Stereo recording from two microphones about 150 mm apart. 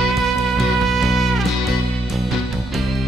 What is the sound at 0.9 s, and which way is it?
Music, centre (ahead or behind).